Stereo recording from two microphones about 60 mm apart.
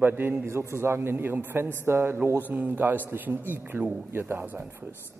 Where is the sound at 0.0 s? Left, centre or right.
Right.